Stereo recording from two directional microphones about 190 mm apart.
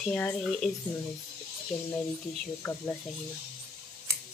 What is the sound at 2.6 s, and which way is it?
Speech, 10° left (ahead or behind).